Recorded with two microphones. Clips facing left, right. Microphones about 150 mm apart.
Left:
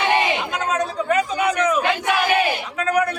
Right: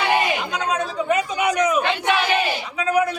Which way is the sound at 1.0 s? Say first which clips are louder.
Even; 15° right (ahead or behind).